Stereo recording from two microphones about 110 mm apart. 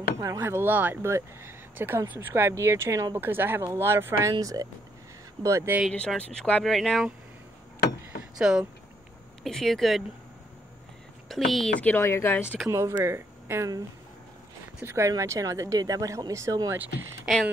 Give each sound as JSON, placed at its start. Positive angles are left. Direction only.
{"t": 0.2, "sound": "speech", "side_deg": -25}
{"t": 4.3, "sound": "speech", "side_deg": -35}
{"t": 5.9, "sound": "speech", "side_deg": 10}
{"t": 8.4, "sound": "speech", "side_deg": -5}
{"t": 9.4, "sound": "speech", "side_deg": 5}
{"t": 11.2, "sound": "speech", "side_deg": 0}
{"t": 11.8, "sound": "speech", "side_deg": 20}
{"t": 12.6, "sound": "speech", "side_deg": -30}
{"t": 14.8, "sound": "speech", "side_deg": -25}